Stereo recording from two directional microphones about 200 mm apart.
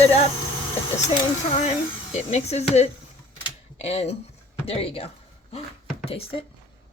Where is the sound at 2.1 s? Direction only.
35° left (ahead or behind).